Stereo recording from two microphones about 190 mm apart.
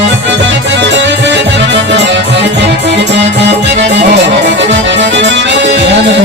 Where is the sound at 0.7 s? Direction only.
70° right (ahead or behind).